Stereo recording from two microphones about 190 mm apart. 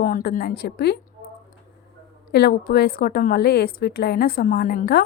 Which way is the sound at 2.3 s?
55° left (ahead or behind).